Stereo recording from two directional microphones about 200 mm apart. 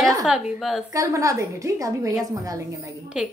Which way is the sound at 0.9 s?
15° right (ahead or behind).